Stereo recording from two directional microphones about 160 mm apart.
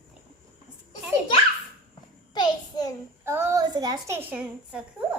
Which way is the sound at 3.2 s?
15° right (ahead or behind).